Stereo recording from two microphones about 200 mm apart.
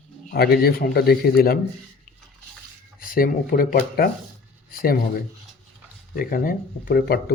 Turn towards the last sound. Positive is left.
turn(degrees=50)  # may be behind; listen again after turning